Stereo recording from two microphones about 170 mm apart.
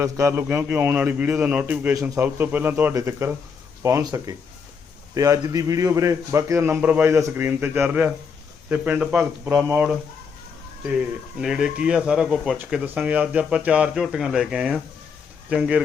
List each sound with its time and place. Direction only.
0.0 s a man's voice: 15° right (ahead or behind)
11.3 s speech: 5° right (ahead or behind)